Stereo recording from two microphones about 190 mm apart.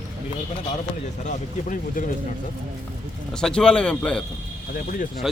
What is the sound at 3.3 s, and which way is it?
A man's voice, 5° left (ahead or behind).